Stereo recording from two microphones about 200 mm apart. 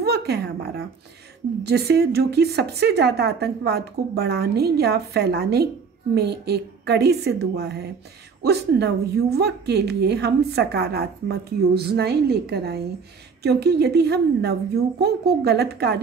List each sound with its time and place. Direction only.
0.0 s a woman's voice: 55° right (ahead or behind)